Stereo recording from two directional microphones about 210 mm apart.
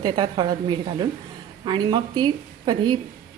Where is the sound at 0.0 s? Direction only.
20° right (ahead or behind).